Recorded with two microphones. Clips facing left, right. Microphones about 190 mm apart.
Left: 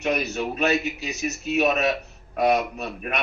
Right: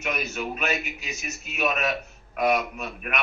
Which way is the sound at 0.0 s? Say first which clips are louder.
Left 5 dB; 35° left (ahead or behind).